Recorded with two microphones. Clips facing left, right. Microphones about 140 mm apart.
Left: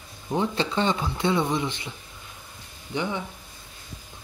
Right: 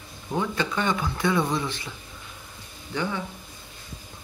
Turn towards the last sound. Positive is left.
turn(degrees=20)  # may be behind; listen again after turning